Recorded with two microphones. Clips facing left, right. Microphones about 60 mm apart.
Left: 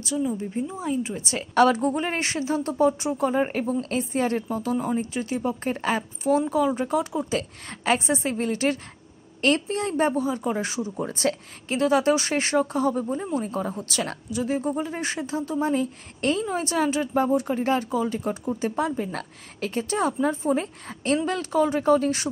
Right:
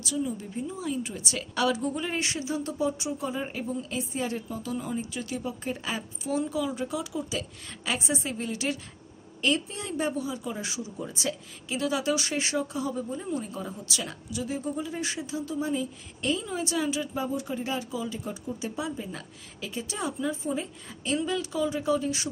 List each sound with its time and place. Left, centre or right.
0.0 s a woman's voice: left
1.5 s a woman's voice: left